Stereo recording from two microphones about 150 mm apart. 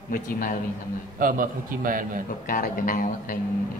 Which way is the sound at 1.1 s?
70° right (ahead or behind).